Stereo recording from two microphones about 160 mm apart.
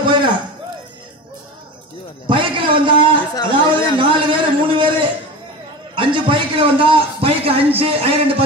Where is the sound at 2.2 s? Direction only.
30° right (ahead or behind).